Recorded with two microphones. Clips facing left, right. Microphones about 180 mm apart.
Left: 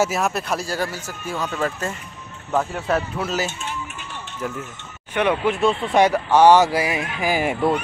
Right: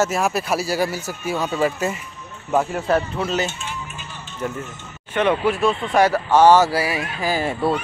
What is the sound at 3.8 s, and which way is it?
Music, 70° left (ahead or behind).